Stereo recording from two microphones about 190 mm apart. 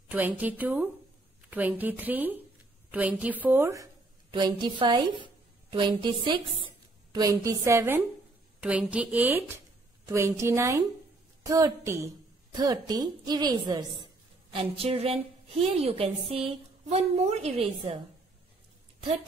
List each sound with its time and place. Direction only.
0.1 s a woman's voice: 10° right (ahead or behind); by 18.0 s 35° right (ahead or behind)